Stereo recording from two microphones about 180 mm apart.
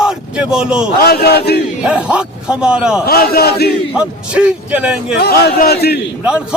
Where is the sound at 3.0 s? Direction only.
60° left (ahead or behind).